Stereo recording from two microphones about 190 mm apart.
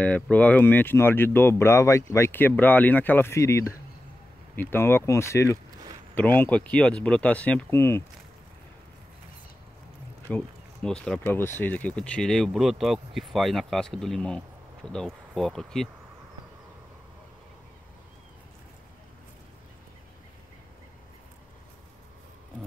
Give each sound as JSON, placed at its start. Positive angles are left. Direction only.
{"t": 0.0, "sound": "speech", "side_deg": 10}
{"t": 10.3, "sound": "speech", "side_deg": 5}